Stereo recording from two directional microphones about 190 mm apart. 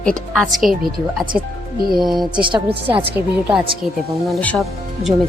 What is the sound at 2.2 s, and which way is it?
Speech, 25° right (ahead or behind).